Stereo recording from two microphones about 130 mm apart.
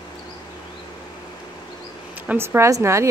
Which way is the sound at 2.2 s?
15° right (ahead or behind).